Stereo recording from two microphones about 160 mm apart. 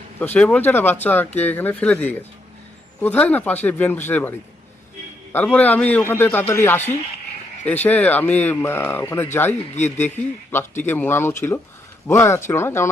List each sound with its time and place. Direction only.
0.2 s speech: 10° left (ahead or behind)